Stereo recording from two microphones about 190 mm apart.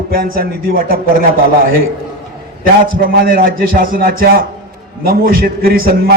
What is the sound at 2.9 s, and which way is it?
A man's voice, 45° right (ahead or behind).